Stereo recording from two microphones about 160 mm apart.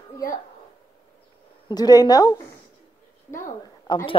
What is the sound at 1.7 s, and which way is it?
Speech, 25° left (ahead or behind).